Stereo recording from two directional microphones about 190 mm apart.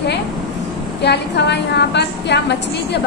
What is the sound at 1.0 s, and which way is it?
A woman's voice, 60° left (ahead or behind).